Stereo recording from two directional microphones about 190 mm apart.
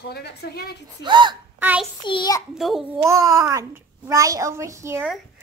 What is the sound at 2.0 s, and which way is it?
Speech, 25° left (ahead or behind).